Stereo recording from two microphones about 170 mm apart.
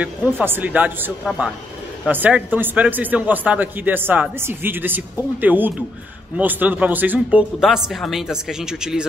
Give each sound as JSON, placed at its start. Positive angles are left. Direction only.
{"t": 0.0, "sound": "speech", "side_deg": -10}